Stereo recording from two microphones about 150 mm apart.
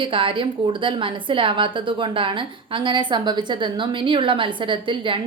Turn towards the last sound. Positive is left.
turn(degrees=-35)  # may be behind; listen again after turning